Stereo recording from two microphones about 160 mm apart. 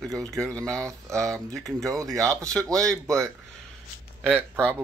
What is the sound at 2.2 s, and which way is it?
Speech, 20° right (ahead or behind).